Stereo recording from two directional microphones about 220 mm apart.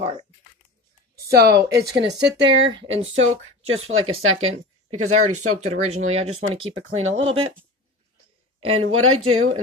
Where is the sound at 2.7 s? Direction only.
25° right (ahead or behind).